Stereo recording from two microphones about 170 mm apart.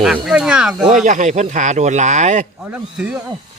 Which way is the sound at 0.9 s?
45° right (ahead or behind).